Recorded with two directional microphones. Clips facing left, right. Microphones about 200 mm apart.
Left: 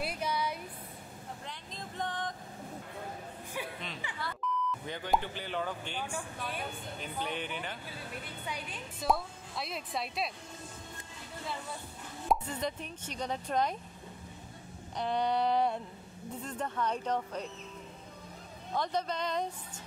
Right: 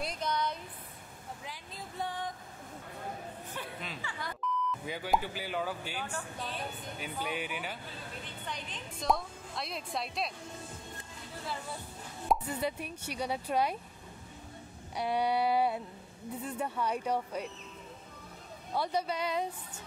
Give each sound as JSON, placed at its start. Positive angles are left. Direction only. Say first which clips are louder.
{"t": 0.0, "sound": "a sound", "louder": "even", "side_deg": 10}
{"t": 1.4, "sound": "vehicle", "louder": "left 1 dB", "side_deg": -5}
{"t": 3.6, "sound": "a sound", "louder": "left 4 dB", "side_deg": 10}
{"t": 4.6, "sound": "speech", "louder": "right 1 dB", "side_deg": -5}
{"t": 6.0, "sound": "speech", "louder": "left 1 dB", "side_deg": 10}
{"t": 7.0, "sound": "speech", "louder": "right 1 dB", "side_deg": -10}
{"t": 8.5, "sound": "a woman's voice", "louder": "left 1 dB", "side_deg": 10}
{"t": 12.3, "sound": "speech", "louder": "right 1 dB", "side_deg": -5}
{"t": 15.0, "sound": "speech", "louder": "right 1 dB", "side_deg": -10}
{"t": 18.7, "sound": "speech", "louder": "right 1 dB", "side_deg": -10}